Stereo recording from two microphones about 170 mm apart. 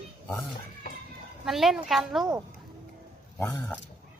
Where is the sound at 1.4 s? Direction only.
Centre (ahead or behind).